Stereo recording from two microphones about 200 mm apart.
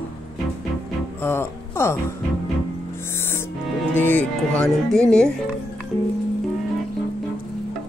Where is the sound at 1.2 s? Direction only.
10° left (ahead or behind).